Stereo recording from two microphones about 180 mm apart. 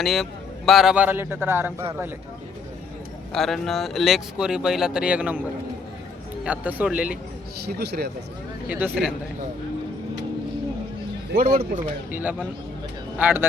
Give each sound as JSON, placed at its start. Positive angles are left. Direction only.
{"t": 0.0, "sound": "a man's voice", "side_deg": 0}
{"t": 3.3, "sound": "speech", "side_deg": 0}
{"t": 6.4, "sound": "a man's voice", "side_deg": -10}
{"t": 7.7, "sound": "speech", "side_deg": -60}
{"t": 8.7, "sound": "a man's voice", "side_deg": -5}
{"t": 11.3, "sound": "speech", "side_deg": -55}
{"t": 12.1, "sound": "a man's voice", "side_deg": -10}